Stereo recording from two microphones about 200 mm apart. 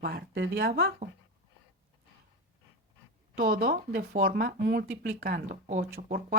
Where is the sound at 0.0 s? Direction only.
50° right (ahead or behind).